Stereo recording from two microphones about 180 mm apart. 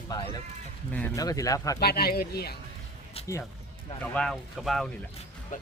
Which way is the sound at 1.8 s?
60° left (ahead or behind).